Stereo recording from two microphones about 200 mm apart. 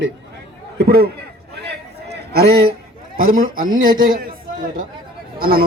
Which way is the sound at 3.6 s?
80° right.